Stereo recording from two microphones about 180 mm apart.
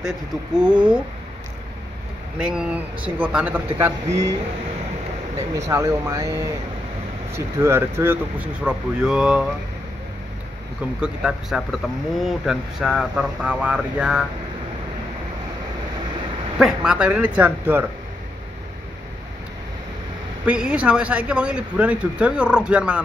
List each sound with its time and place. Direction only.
0.6 s speech: 5° right (ahead or behind)
2.3 s speech: 5° right (ahead or behind)
5.7 s speech: 15° right (ahead or behind)
7.3 s speech: 15° right (ahead or behind)
11.0 s speech: 5° right (ahead or behind)
16.5 s speech: 5° right (ahead or behind)
20.4 s speech: 5° right (ahead or behind)